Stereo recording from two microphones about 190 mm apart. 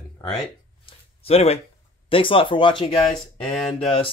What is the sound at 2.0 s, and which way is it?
Speech, 30° left (ahead or behind).